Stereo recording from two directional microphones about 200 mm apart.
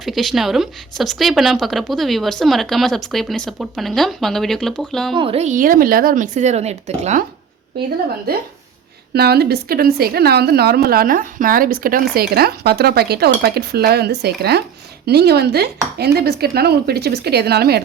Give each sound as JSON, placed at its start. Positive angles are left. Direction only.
{"t": 0.0, "sound": "a woman's voice", "side_deg": 0}
{"t": 5.1, "sound": "speech", "side_deg": -25}
{"t": 9.1, "sound": "a woman's voice", "side_deg": -50}